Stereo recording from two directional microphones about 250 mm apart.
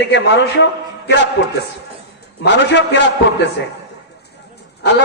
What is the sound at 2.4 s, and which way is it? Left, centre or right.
Speech, left.